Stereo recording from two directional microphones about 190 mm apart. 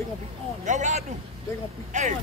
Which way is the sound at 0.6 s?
40° right (ahead or behind).